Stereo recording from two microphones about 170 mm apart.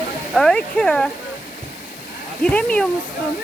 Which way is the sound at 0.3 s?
5° left (ahead or behind).